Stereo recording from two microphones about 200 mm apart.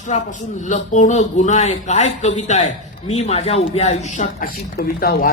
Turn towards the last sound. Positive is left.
turn(degrees=50)  # may be behind; listen again after turning